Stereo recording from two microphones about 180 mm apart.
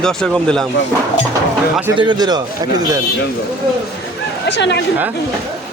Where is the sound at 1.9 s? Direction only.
25° right (ahead or behind).